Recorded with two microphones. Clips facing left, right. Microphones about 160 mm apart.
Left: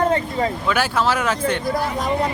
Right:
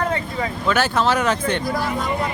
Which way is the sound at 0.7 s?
10° left (ahead or behind).